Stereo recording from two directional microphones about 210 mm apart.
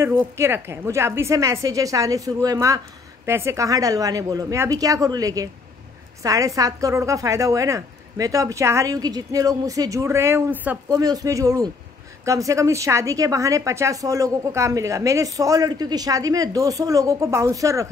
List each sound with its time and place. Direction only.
0.0 s a woman's voice: 10° right (ahead or behind)